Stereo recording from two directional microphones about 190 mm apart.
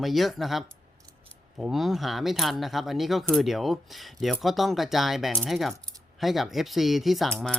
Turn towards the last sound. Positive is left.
turn(degrees=0)  # may be behind; listen again after turning